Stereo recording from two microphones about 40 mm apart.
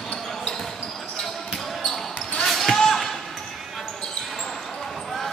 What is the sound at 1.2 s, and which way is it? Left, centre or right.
Basketball bounce, centre.